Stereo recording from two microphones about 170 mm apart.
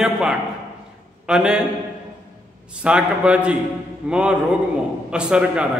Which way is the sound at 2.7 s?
5° right (ahead or behind).